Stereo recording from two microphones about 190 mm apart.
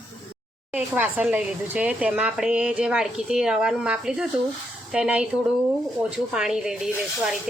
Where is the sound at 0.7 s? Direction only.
10° right (ahead or behind).